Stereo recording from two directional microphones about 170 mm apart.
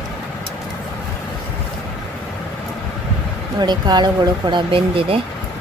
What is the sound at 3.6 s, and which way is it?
Speech, 25° right (ahead or behind).